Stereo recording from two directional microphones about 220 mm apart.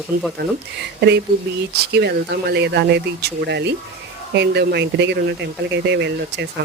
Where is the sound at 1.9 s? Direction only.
50° right (ahead or behind).